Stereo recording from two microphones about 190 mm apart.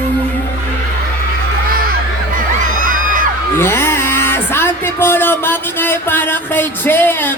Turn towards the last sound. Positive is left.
turn(degrees=10)  # may be behind; listen again after turning